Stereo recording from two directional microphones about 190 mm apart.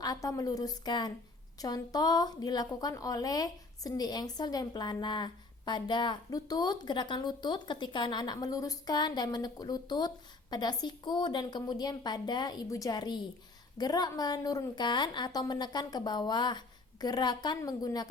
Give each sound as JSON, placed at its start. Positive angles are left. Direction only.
{"t": 0.0, "sound": "a woman's voice", "side_deg": 20}